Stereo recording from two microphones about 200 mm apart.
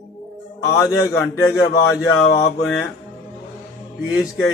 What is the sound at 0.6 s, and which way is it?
A man's voice, 15° left (ahead or behind).